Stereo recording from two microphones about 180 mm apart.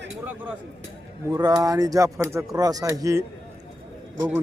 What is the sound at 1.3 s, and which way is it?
Speech, 20° right (ahead or behind).